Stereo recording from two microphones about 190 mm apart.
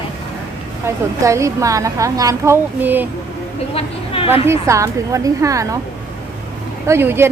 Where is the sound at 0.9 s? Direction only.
15° right (ahead or behind).